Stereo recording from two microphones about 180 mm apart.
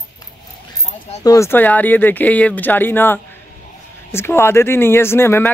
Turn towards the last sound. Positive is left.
turn(degrees=15)  # may be behind; listen again after turning